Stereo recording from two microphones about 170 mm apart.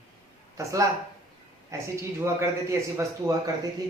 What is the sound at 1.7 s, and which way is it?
Speech, 15° right (ahead or behind).